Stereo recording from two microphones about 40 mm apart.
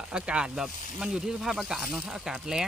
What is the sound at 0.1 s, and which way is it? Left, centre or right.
Speech, right.